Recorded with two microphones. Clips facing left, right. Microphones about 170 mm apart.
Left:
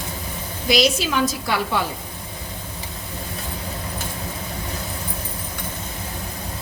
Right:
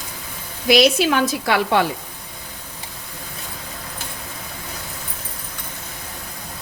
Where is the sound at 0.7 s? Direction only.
60° right (ahead or behind); by 1.9 s 75° right (ahead or behind).